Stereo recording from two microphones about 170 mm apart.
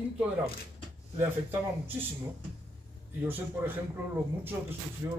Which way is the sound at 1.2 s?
15° right (ahead or behind).